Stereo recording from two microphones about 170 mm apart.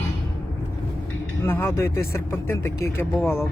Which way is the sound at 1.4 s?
15° left (ahead or behind).